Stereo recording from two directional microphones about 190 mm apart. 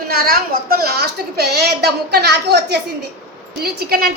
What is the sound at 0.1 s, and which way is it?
A woman's voice, 50° right (ahead or behind).